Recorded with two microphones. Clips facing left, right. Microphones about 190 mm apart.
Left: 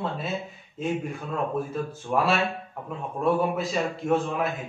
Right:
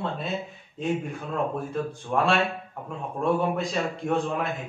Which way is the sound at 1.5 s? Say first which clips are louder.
Left 1 dB; 5° left (ahead or behind).